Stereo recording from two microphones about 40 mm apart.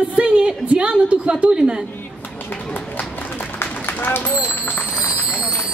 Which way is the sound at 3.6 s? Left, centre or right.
Left.